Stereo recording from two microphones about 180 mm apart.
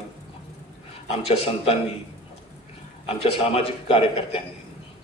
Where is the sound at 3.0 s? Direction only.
35° left (ahead or behind).